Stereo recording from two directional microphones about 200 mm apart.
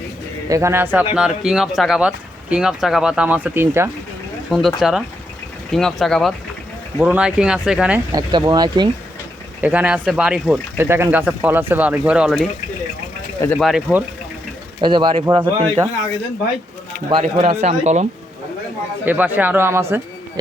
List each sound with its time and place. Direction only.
0.4 s speech: 15° right (ahead or behind)
8.1 s speech: 20° right (ahead or behind)
9.6 s speech: 5° right (ahead or behind)
14.8 s speech: 25° right (ahead or behind)
17.1 s speech: 30° right (ahead or behind)
19.0 s speech: 10° right (ahead or behind)